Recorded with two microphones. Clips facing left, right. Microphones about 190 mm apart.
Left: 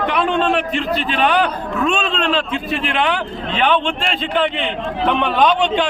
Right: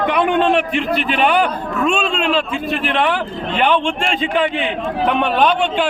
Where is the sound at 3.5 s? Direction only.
10° right (ahead or behind).